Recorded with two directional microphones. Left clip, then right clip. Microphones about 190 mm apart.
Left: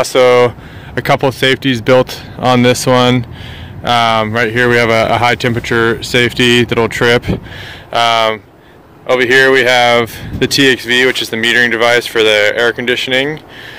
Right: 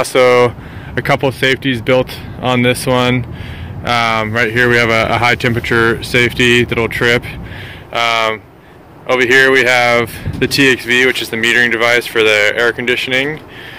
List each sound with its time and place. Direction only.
0.0 s speech: 20° left (ahead or behind)